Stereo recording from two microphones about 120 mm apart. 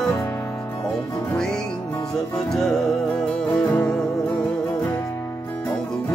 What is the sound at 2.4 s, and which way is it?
Music, 5° left (ahead or behind).